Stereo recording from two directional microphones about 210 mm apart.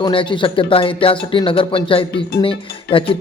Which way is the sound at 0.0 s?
25° left (ahead or behind).